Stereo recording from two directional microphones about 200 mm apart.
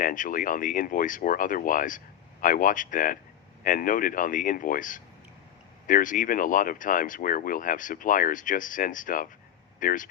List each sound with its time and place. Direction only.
0.0 s speech: 40° left (ahead or behind)